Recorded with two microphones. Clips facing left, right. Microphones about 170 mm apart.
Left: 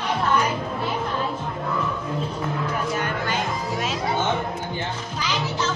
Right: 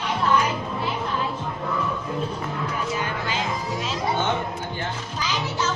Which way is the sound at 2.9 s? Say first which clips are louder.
Left 2 dB; 55° left (ahead or behind).